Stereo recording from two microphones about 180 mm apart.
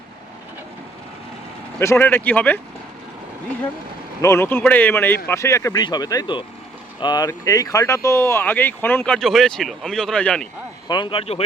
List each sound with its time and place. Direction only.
1.8 s speech: 15° left (ahead or behind)
4.2 s speech: 15° left (ahead or behind)
10.8 s speech: 25° left (ahead or behind)